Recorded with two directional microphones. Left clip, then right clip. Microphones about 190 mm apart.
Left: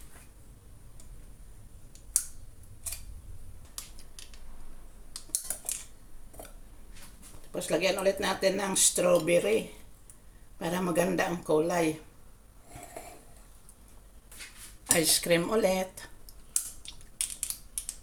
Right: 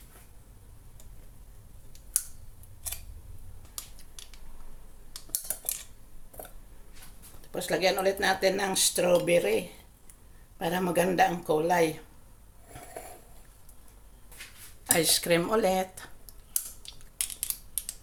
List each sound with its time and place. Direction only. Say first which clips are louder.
5.1 s typing: left 1 dB; 25° right (ahead or behind)
7.5 s speech: right 2 dB; 20° right (ahead or behind)
14.8 s speech: right 1 dB; 15° right (ahead or behind)